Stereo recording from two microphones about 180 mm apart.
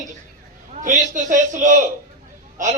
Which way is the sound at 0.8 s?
45° right (ahead or behind).